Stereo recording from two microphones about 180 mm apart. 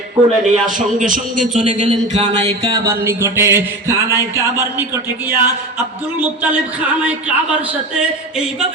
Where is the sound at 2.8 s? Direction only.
15° right (ahead or behind).